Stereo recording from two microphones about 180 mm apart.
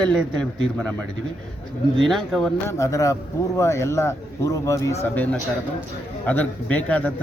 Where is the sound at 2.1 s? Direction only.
Centre (ahead or behind).